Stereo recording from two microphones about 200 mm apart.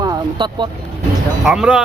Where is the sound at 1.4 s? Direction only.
5° right (ahead or behind).